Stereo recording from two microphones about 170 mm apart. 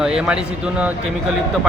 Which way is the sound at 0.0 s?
5° right (ahead or behind).